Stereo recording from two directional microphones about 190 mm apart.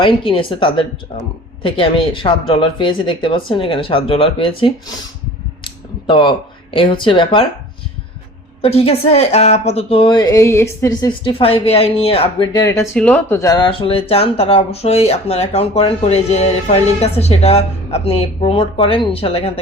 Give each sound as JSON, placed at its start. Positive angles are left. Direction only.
{"t": 0.0, "sound": "speech", "side_deg": 25}
{"t": 5.6, "sound": "a sound", "side_deg": 25}
{"t": 6.7, "sound": "speech", "side_deg": 25}
{"t": 8.6, "sound": "speech", "side_deg": 30}